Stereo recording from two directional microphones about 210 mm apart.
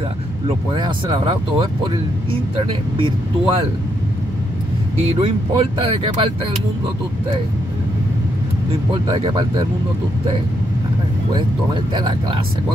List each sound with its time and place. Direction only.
0.5 s speech: 20° right (ahead or behind)
5.2 s speech: 25° right (ahead or behind)
9.0 s speech: 25° right (ahead or behind)
11.3 s speech: 20° right (ahead or behind)